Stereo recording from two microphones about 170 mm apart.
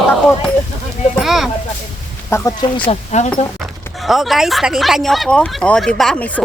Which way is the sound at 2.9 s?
40° left (ahead or behind).